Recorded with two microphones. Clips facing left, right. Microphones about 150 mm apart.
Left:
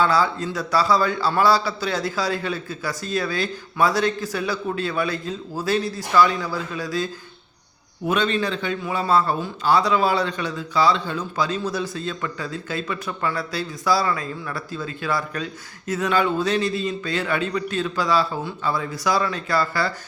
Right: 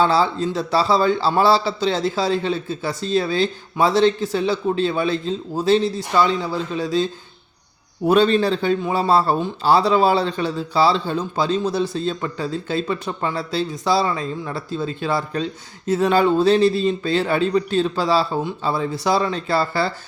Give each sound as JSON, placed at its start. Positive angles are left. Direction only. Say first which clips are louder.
{"t": 0.0, "sound": "a man's voice", "louder": "right 3 dB", "side_deg": -25}